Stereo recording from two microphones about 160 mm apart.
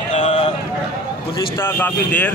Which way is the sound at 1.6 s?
15° left (ahead or behind).